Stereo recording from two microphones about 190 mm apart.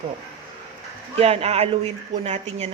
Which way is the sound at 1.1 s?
30° right (ahead or behind).